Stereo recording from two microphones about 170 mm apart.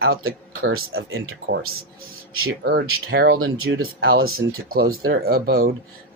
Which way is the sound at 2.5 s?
85° right.